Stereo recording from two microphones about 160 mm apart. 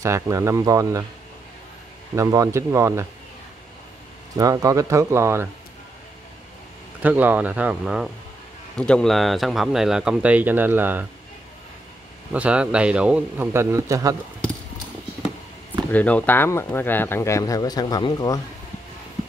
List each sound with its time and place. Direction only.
0.0 s speech: 20° right (ahead or behind)
2.1 s speech: 20° right (ahead or behind)
4.4 s speech: 20° right (ahead or behind)
7.0 s a man's voice: 10° right (ahead or behind)
8.7 s speech: 5° left (ahead or behind); by 11.1 s 10° right (ahead or behind)
12.3 s a man's voice: 10° right (ahead or behind)
15.9 s speech: 10° left (ahead or behind)